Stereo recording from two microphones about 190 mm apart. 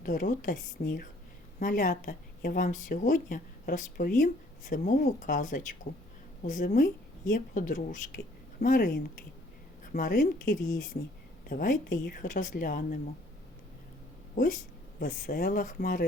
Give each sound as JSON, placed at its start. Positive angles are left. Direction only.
{"t": 0.0, "sound": "speech", "side_deg": 45}
{"t": 14.9, "sound": "speech", "side_deg": 45}